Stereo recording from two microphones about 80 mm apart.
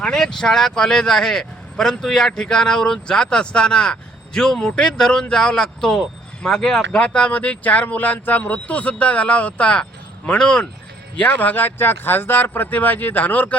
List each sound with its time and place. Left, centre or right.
0.0 s speech: centre